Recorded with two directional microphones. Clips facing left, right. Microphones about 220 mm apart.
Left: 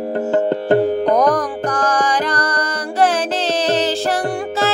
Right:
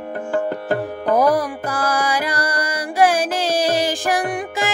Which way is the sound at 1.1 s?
5° right (ahead or behind).